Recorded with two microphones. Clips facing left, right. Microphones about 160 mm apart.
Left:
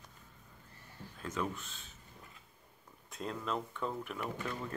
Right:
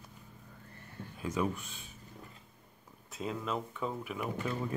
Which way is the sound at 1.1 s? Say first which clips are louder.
Right 4 dB; 10° right (ahead or behind).